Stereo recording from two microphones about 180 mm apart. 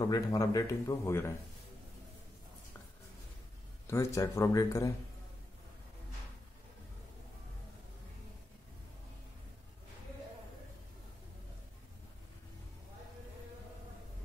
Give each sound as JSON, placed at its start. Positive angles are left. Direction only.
{"t": 0.0, "sound": "speech", "side_deg": 20}
{"t": 3.8, "sound": "speech", "side_deg": 15}